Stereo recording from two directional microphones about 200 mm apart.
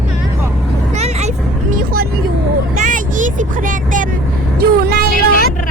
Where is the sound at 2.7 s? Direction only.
40° right (ahead or behind).